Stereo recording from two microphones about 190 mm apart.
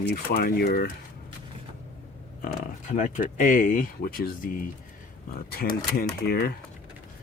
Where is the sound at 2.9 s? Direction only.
40° left (ahead or behind).